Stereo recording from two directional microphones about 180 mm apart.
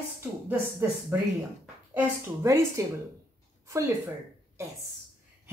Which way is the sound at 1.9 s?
15° right (ahead or behind).